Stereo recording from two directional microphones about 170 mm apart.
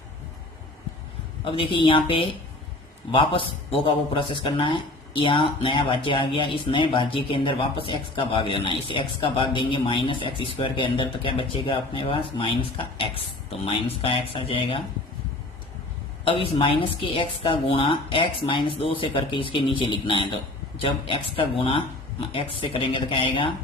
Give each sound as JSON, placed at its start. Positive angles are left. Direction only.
{"t": 1.5, "sound": "a man's voice", "side_deg": 30}
{"t": 16.2, "sound": "a man's voice", "side_deg": 35}